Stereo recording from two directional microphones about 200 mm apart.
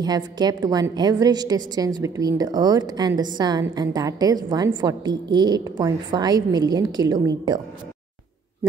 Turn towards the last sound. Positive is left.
turn(degrees=-20)  # may be behind; listen again after turning